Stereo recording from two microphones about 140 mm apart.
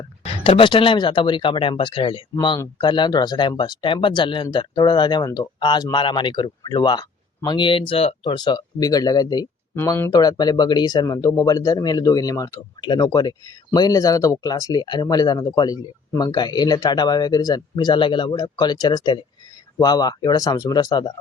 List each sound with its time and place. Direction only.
0.4 s speech: 40° left (ahead or behind)